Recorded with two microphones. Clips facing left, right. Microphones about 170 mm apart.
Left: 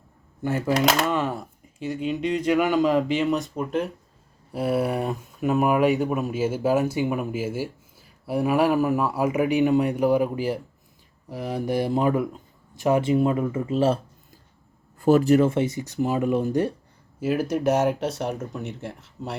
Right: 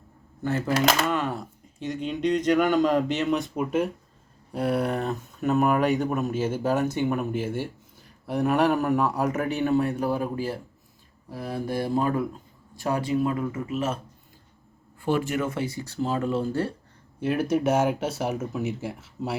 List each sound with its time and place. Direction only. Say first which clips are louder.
0.7 s speech: left 2 dB; centre (ahead or behind); by 14.0 s 30° left (ahead or behind)
15.0 s speech: left 8 dB; 40° left (ahead or behind); by 16.7 s 15° left (ahead or behind)
17.2 s speech: even; centre (ahead or behind)